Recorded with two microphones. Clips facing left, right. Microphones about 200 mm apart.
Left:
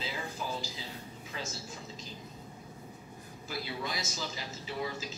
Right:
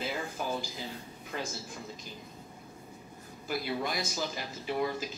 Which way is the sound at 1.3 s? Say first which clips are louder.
Right 4 dB; 55° right (ahead or behind).